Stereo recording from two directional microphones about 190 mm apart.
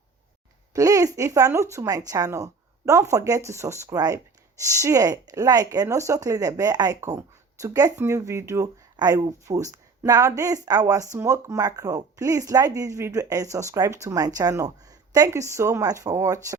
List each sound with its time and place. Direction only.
0.7 s speech: 15° right (ahead or behind)